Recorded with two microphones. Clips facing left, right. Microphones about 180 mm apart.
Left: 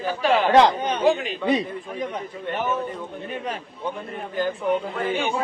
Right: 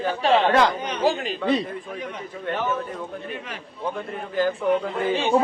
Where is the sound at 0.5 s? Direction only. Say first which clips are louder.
Left 4 dB; 25° left (ahead or behind).